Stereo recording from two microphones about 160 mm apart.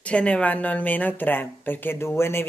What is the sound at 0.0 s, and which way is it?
Speech, 10° left (ahead or behind).